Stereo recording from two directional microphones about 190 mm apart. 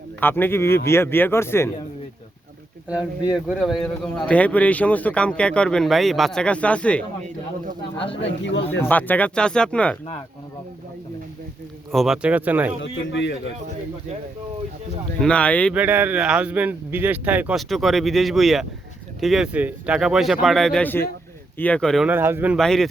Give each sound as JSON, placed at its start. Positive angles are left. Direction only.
{"t": 0.2, "sound": "speech", "side_deg": 10}
{"t": 2.9, "sound": "speech", "side_deg": -5}
{"t": 8.1, "sound": "a man's voice", "side_deg": 70}
{"t": 8.8, "sound": "speech", "side_deg": 10}
{"t": 11.9, "sound": "speech", "side_deg": 0}
{"t": 12.8, "sound": "a man's voice", "side_deg": 65}
{"t": 15.2, "sound": "speech", "side_deg": 5}
{"t": 15.7, "sound": "speech", "side_deg": -10}
{"t": 22.1, "sound": "a man's voice", "side_deg": -10}
{"t": 22.5, "sound": "speech", "side_deg": 0}